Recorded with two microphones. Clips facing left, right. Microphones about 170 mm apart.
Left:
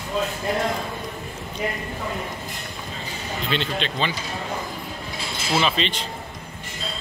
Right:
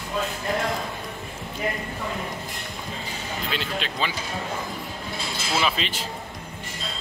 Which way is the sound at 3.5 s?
5° right (ahead or behind).